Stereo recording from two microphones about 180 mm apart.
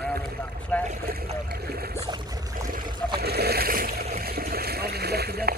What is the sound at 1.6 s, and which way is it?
Boat, 60° right (ahead or behind).